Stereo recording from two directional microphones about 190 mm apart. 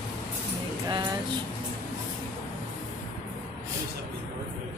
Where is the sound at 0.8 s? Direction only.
20° right (ahead or behind).